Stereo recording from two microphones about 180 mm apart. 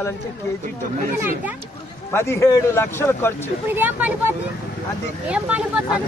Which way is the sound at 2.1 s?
15° left (ahead or behind).